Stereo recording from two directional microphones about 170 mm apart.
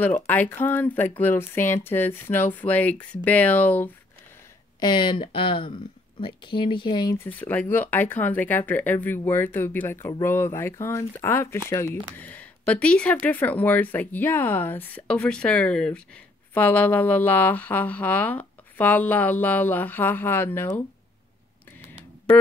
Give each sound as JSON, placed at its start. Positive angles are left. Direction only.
{"t": 0.0, "sound": "speech", "side_deg": 10}
{"t": 4.7, "sound": "speech", "side_deg": 25}
{"t": 7.2, "sound": "speech", "side_deg": 10}